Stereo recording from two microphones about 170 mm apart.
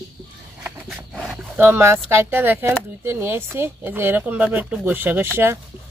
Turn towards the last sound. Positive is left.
turn(degrees=-15)  # may be behind; listen again after turning